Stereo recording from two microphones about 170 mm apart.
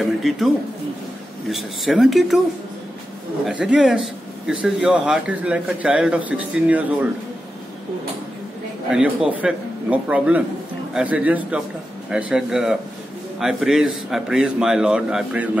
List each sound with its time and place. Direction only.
0.0 s a man's voice: centre (ahead or behind)
1.5 s a man's voice: centre (ahead or behind)
3.4 s speech: 5° right (ahead or behind)
8.9 s a man's voice: 5° right (ahead or behind)